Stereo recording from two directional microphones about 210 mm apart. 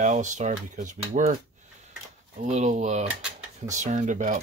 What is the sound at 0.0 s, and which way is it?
Cutlery, 35° right (ahead or behind).